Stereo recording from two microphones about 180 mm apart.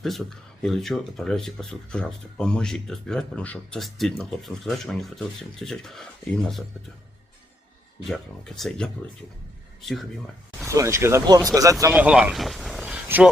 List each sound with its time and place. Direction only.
0.0 s speech: centre (ahead or behind)
8.0 s speech: centre (ahead or behind)
10.7 s speech: 15° right (ahead or behind)
11.9 s speech: 5° right (ahead or behind)